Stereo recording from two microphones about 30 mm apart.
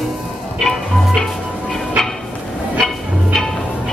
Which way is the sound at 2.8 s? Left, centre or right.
Left.